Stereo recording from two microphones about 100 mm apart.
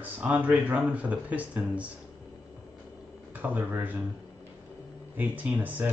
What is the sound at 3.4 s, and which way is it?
Speech, 20° right (ahead or behind).